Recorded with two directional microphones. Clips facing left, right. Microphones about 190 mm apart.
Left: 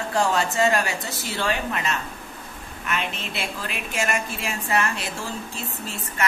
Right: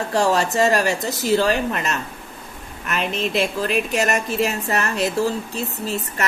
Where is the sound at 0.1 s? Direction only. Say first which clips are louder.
Right 4 dB; 40° right (ahead or behind).